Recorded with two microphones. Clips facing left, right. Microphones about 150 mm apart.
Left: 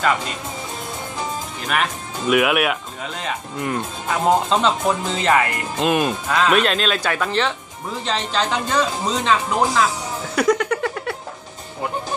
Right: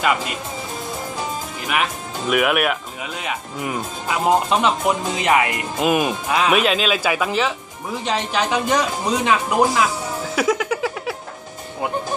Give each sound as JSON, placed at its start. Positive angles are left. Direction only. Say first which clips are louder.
{"t": 1.7, "sound": "speech", "louder": "even", "side_deg": -5}
{"t": 3.0, "sound": "speech", "louder": "even", "side_deg": -10}
{"t": 5.8, "sound": "speech", "louder": "even", "side_deg": -5}
{"t": 6.2, "sound": "speech", "louder": "even", "side_deg": -15}
{"t": 6.5, "sound": "speech", "louder": "even", "side_deg": -5}
{"t": 10.3, "sound": "a sound", "louder": "left 2 dB", "side_deg": 0}